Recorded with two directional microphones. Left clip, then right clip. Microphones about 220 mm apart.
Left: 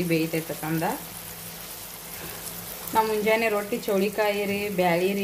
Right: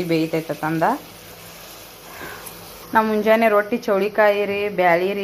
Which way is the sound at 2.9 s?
10° right (ahead or behind).